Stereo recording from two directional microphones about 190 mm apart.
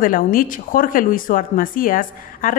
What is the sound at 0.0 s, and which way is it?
Speech, 45° left (ahead or behind).